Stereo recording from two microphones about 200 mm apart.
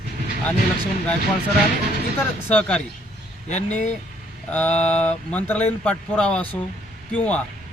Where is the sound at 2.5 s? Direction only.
5° left (ahead or behind).